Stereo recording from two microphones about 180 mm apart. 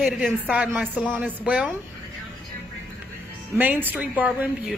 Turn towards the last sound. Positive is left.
turn(degrees=-10)  # may be behind; listen again after turning